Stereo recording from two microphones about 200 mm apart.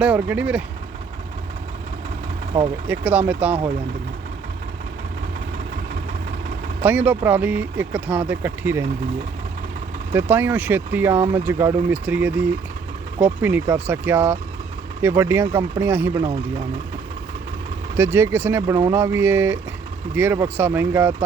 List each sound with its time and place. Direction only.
0.0 s speech: 5° right (ahead or behind)
2.8 s speech: 10° right (ahead or behind)
6.8 s speech: 10° right (ahead or behind)
10.1 s speech: 10° right (ahead or behind)
16.2 s speech: 35° right (ahead or behind)
17.9 s speech: 10° right (ahead or behind)